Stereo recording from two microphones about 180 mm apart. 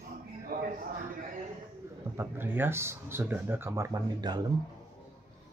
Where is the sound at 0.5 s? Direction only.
50° right (ahead or behind).